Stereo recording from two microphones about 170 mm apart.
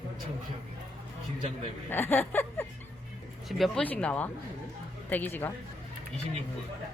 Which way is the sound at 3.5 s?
Centre (ahead or behind).